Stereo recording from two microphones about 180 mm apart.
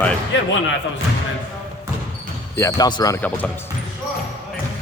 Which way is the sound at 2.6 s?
20° left (ahead or behind).